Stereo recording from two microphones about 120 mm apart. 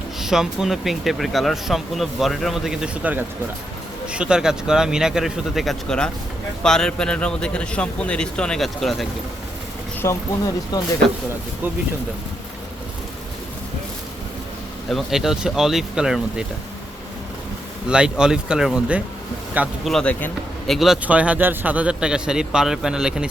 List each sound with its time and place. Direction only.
0.2 s a man's voice: 5° right (ahead or behind)
10.0 s speech: 25° left (ahead or behind)
14.8 s speech: centre (ahead or behind)
17.8 s a man's voice: 10° right (ahead or behind)
19.8 s a man's voice: 5° left (ahead or behind)
20.7 s a man's voice: centre (ahead or behind)